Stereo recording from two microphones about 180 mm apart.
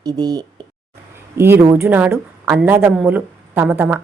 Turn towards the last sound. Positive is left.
turn(degrees=-5)  # may be behind; listen again after turning